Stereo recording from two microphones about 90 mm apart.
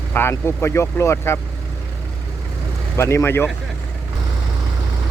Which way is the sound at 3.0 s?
30° left (ahead or behind).